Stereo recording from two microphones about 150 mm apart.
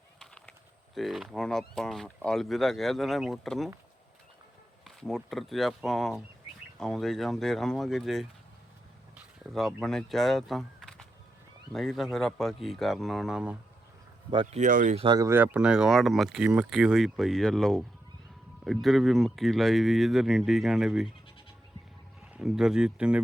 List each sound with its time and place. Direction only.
0.2 s a sound: 5° left (ahead or behind)
0.9 s speech: centre (ahead or behind)
5.0 s speech: centre (ahead or behind)
9.5 s speech: centre (ahead or behind)
14.3 s speech: 35° right (ahead or behind)
14.6 s speech: 60° right (ahead or behind)
14.9 s speech: 30° right (ahead or behind)
15.3 s speech: 10° right (ahead or behind)
22.3 s speech: 5° right (ahead or behind)